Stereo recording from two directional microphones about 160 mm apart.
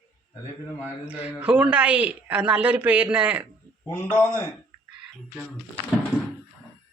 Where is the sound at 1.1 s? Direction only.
10° right (ahead or behind).